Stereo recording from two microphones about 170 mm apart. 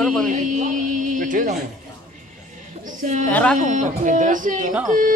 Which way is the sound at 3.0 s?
45° right (ahead or behind).